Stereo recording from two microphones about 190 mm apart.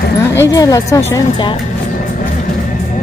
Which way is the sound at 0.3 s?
15° left (ahead or behind).